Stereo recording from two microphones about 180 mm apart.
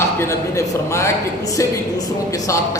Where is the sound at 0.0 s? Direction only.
15° left (ahead or behind).